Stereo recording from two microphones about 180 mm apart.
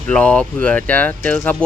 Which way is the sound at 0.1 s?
5° left (ahead or behind).